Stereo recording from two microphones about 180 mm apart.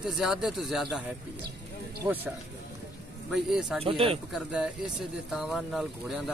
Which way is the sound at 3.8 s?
30° right (ahead or behind).